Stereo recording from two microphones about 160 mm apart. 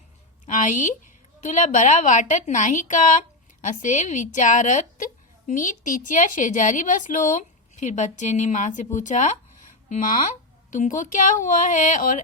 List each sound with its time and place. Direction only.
0.4 s a woman's voice: 50° left (ahead or behind)